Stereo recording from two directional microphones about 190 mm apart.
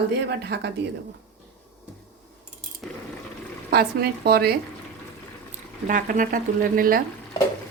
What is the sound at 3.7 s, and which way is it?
Speech, 55° right (ahead or behind).